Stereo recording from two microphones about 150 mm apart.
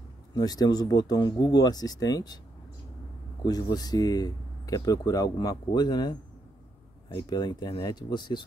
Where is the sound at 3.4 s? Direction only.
25° left (ahead or behind).